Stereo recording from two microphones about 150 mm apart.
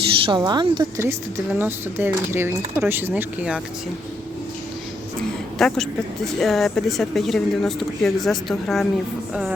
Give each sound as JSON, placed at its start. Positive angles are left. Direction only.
{"t": 0.3, "sound": "a woman's voice", "side_deg": -30}
{"t": 1.5, "sound": "speech", "side_deg": -15}
{"t": 5.5, "sound": "speech", "side_deg": 5}